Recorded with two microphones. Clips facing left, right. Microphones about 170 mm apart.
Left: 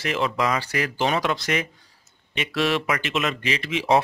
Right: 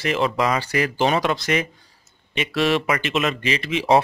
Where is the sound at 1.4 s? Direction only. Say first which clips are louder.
Right 3 dB; centre (ahead or behind).